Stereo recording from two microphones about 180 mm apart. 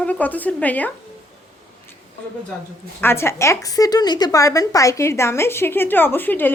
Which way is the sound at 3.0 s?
15° left (ahead or behind).